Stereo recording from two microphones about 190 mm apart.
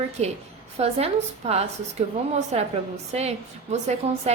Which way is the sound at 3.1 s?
35° right (ahead or behind).